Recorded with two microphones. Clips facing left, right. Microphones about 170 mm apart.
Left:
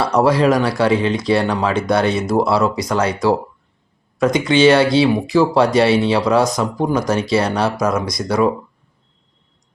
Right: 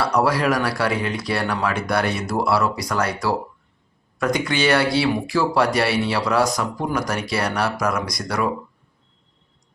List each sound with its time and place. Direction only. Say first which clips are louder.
0.0 s speech: left 5 dB; 20° left (ahead or behind)